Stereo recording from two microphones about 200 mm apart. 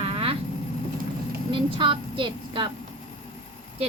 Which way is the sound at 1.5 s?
25° right (ahead or behind).